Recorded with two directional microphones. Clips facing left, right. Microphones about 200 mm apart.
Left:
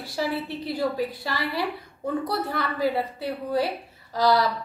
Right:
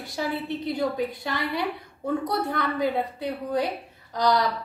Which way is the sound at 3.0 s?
20° right (ahead or behind).